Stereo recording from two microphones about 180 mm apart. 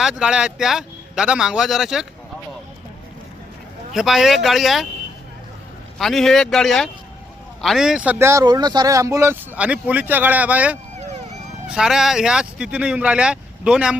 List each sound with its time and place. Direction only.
0.0 s speech: 5° right (ahead or behind)
3.9 s speech: centre (ahead or behind)
6.0 s a man's voice: centre (ahead or behind)